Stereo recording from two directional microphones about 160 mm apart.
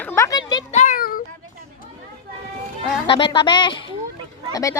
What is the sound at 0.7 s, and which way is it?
Child singing, 50° left (ahead or behind).